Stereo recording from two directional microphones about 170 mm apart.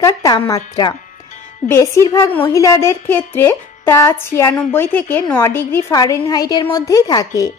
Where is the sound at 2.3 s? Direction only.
15° left (ahead or behind).